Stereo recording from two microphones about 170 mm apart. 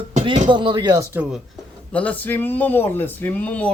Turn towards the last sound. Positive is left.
turn(degrees=10)  # may be behind; listen again after turning